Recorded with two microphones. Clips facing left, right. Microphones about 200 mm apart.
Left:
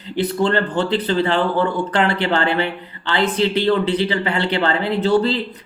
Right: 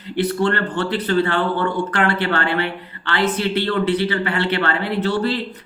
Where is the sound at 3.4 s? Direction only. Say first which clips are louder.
Left 3 dB; 25° left (ahead or behind).